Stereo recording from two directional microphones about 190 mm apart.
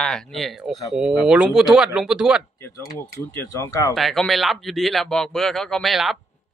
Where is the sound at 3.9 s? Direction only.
Centre (ahead or behind).